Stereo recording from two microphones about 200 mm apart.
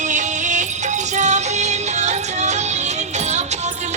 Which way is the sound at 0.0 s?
35° right (ahead or behind).